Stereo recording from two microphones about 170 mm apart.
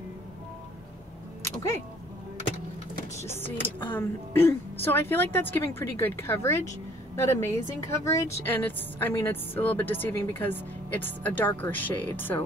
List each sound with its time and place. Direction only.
1.4 s music: 15° left (ahead or behind)
3.3 s a woman's voice: 10° left (ahead or behind)